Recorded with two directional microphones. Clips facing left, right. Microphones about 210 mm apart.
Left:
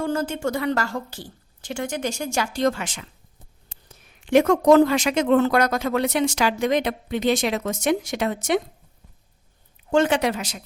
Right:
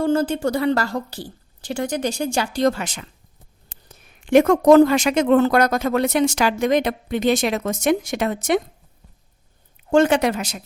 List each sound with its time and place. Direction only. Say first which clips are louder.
0.0 s a woman's voice: right 5 dB; 30° right (ahead or behind)
4.3 s speech: right 3 dB; 50° right (ahead or behind)
9.9 s speech: right 3 dB; 45° right (ahead or behind)